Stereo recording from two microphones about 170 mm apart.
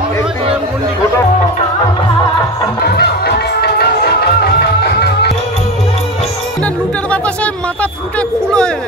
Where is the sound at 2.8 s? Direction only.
70° left (ahead or behind).